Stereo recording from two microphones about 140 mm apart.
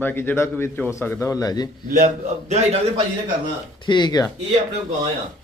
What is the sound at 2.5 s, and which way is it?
Speech, 50° right (ahead or behind).